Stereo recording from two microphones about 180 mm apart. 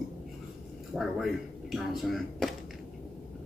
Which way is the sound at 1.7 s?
Centre (ahead or behind).